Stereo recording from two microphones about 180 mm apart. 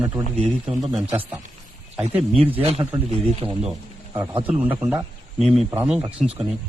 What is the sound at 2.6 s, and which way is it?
Speech, 35° right (ahead or behind).